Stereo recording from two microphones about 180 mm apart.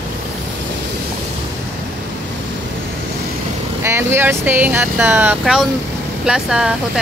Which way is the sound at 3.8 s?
15° right (ahead or behind).